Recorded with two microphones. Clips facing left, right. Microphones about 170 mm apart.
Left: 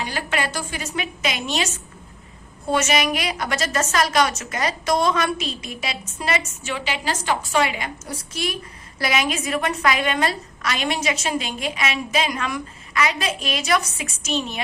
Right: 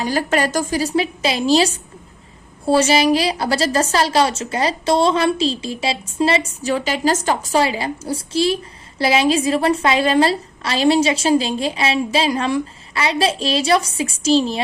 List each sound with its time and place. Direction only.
0.0 s a woman's voice: 40° right (ahead or behind)